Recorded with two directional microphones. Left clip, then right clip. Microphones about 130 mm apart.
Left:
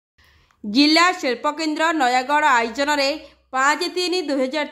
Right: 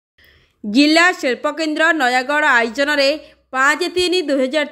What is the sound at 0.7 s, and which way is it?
A woman's voice, 15° right (ahead or behind).